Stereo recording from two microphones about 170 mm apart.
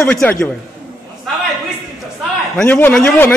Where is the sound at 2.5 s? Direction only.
10° left (ahead or behind).